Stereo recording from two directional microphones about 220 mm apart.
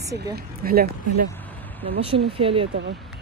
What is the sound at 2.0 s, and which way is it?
Speech, 25° right (ahead or behind).